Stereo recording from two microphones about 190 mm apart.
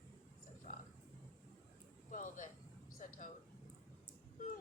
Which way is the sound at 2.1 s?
40° left (ahead or behind).